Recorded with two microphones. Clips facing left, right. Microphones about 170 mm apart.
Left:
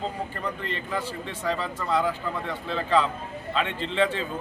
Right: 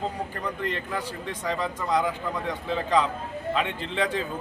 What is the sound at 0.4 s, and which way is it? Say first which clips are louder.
A man's voice: right 2 dB; 10° right (ahead or behind).